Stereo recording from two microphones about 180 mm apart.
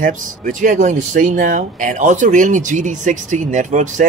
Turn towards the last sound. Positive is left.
turn(degrees=-45)  # may be behind; listen again after turning